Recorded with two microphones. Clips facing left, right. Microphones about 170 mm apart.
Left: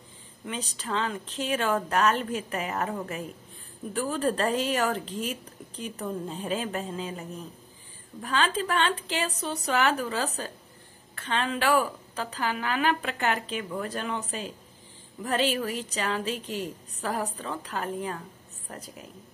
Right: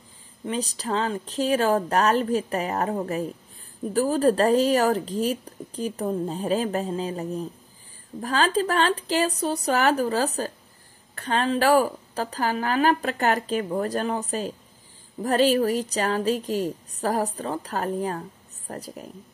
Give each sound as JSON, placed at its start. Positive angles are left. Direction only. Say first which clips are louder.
{"t": 0.5, "sound": "speech", "louder": "right 6 dB", "side_deg": -35}